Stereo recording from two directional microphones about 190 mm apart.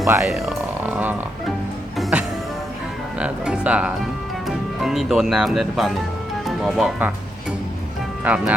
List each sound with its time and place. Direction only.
0.1 s music: 5° right (ahead or behind)
3.2 s speech: 5° right (ahead or behind)
8.2 s speech: 5° right (ahead or behind)